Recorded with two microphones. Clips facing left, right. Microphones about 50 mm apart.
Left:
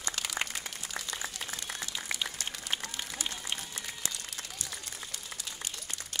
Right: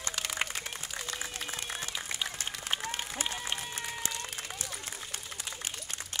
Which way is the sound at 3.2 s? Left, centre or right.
Right.